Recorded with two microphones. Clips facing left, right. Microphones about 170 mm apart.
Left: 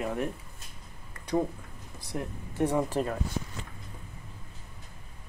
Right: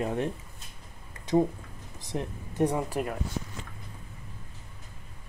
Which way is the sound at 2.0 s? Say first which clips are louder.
Right 2 dB; 20° right (ahead or behind).